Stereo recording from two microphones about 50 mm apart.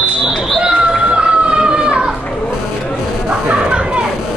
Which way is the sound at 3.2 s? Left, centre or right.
Centre.